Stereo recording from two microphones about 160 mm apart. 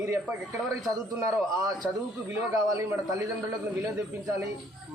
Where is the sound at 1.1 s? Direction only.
15° right (ahead or behind).